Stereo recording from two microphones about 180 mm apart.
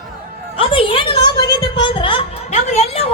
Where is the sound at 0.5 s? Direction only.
30° left (ahead or behind).